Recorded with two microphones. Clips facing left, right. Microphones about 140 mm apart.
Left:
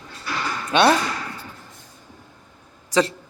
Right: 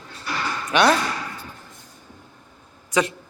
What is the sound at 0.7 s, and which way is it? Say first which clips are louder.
Speech: left 1 dB; 25° left (ahead or behind).